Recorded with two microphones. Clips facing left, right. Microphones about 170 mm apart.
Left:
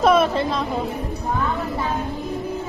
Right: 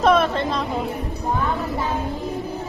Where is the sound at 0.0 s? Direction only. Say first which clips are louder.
Left 1 dB; centre (ahead or behind).